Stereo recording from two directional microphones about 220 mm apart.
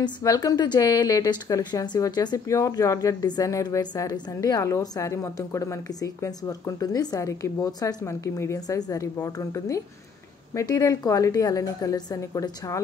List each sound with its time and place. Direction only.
0.0 s a woman's voice: 15° left (ahead or behind)